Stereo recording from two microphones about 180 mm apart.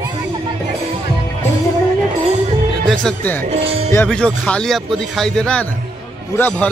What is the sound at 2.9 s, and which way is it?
A man's voice, 5° left (ahead or behind).